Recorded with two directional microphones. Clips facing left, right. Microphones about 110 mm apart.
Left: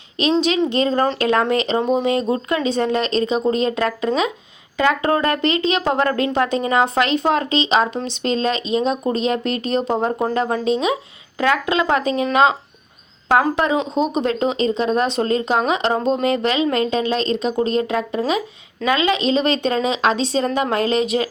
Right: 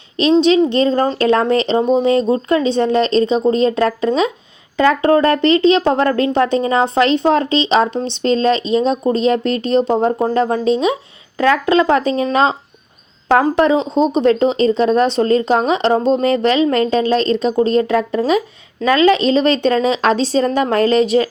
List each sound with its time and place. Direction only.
0.2 s speech: 30° right (ahead or behind)